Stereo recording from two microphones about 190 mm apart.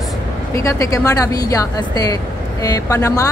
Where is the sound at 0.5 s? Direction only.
15° left (ahead or behind).